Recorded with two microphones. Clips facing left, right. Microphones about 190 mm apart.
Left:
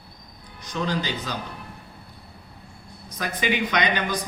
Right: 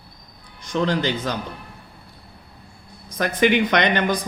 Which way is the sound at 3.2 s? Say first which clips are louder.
Right 7 dB; 60° right (ahead or behind).